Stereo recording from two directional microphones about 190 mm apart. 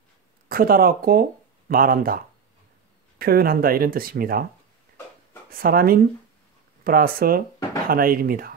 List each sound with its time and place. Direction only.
0.5 s speech: 50° right (ahead or behind)
5.5 s speech: 50° right (ahead or behind)